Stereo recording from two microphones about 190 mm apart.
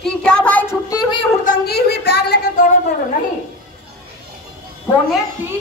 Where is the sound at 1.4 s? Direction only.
50° left (ahead or behind).